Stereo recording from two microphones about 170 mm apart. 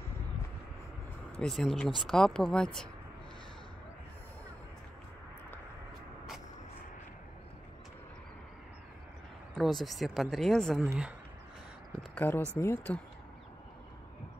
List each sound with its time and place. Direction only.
1.4 s speech: centre (ahead or behind)
9.6 s speech: centre (ahead or behind)
12.2 s speech: 10° left (ahead or behind)